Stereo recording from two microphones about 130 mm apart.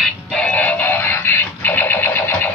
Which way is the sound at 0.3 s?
10° left (ahead or behind).